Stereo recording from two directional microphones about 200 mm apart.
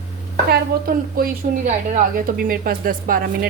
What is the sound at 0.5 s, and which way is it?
A woman's voice, 45° right (ahead or behind).